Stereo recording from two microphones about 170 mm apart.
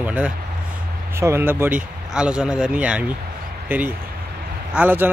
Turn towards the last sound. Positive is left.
turn(degrees=-10)  # may be behind; listen again after turning